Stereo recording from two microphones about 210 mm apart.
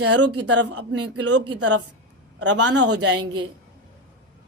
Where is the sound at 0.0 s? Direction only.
90° right; by 3.2 s 55° right (ahead or behind).